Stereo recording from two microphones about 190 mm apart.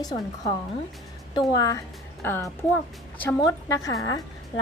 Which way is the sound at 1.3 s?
20° left (ahead or behind).